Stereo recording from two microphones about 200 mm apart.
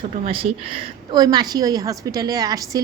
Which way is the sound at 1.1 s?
20° right (ahead or behind).